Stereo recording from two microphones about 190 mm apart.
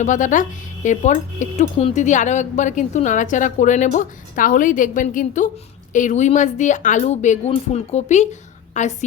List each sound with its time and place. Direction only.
0.0 s speech: 40° left (ahead or behind)